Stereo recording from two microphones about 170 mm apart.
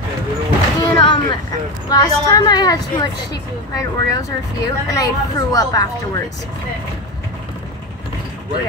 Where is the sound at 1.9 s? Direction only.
20° left (ahead or behind).